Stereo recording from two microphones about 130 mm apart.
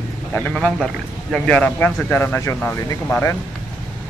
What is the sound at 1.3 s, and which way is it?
Speech, 10° left (ahead or behind).